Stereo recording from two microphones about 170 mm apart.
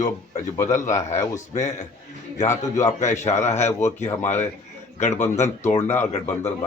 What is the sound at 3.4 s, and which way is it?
Speech, 40° left (ahead or behind).